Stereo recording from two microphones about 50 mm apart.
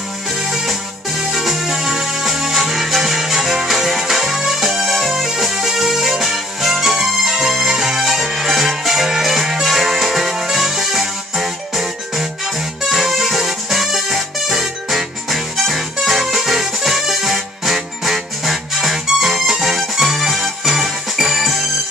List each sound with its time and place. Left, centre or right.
0.4 s music: centre